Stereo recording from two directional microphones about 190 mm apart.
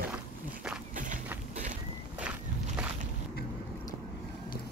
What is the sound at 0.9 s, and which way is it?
Walk, 40° right (ahead or behind).